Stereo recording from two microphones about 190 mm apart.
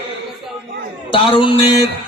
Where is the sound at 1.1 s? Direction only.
25° left (ahead or behind).